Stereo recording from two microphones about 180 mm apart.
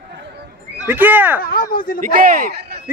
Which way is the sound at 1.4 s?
55° left (ahead or behind).